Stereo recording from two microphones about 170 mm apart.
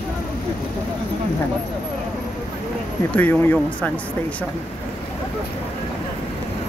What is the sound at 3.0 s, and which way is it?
Speech, 10° left (ahead or behind).